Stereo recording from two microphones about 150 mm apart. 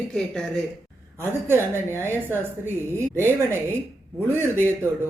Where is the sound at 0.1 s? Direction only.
5° left (ahead or behind).